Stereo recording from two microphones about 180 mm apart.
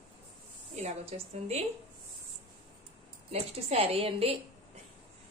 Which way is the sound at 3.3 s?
35° right (ahead or behind).